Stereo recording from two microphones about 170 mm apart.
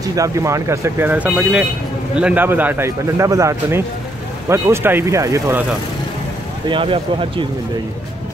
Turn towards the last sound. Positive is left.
turn(degrees=-30)  # may be behind; listen again after turning